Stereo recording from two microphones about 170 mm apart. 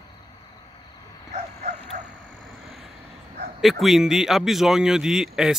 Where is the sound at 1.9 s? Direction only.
45° right (ahead or behind).